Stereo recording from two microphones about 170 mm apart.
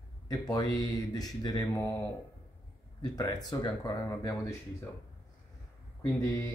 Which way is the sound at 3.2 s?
20° left (ahead or behind).